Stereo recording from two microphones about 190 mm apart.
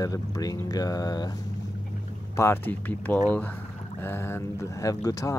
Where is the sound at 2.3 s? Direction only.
10° left (ahead or behind).